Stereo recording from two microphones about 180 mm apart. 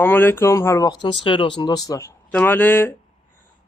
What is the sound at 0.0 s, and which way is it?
A man's voice, 10° left (ahead or behind).